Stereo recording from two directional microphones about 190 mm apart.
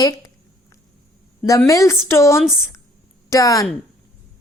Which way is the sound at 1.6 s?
15° left (ahead or behind).